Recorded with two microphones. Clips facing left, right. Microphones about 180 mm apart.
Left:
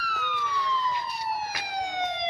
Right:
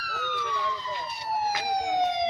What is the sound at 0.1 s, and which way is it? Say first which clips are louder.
Emergency vehicle: right 2 dB; 35° right (ahead or behind).